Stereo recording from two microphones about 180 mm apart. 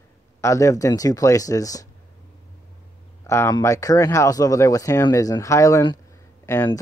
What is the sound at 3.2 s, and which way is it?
Speech, 15° left (ahead or behind).